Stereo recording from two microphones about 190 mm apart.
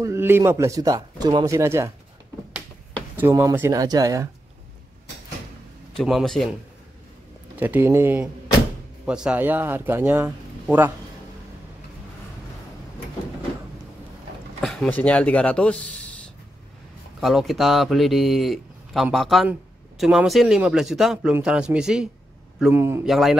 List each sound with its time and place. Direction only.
0.0 s speech: 15° right (ahead or behind)
3.2 s speech: 15° right (ahead or behind)
5.9 s speech: centre (ahead or behind)
7.5 s speech: 10° right (ahead or behind)
14.6 s speech: centre (ahead or behind)
17.2 s speech: centre (ahead or behind)
23.0 s speech: centre (ahead or behind)